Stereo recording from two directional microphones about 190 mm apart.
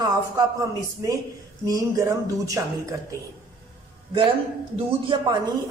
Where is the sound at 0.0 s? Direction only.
20° right (ahead or behind).